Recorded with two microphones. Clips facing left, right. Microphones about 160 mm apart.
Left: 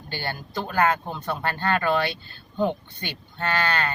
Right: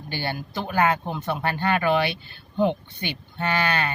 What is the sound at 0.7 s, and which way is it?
Cattle, 15° right (ahead or behind).